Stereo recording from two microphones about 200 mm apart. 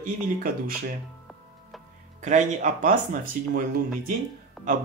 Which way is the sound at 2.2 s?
35° right (ahead or behind).